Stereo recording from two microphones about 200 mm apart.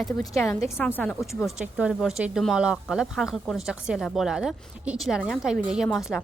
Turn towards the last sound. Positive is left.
turn(degrees=0)  # may be behind; listen again after turning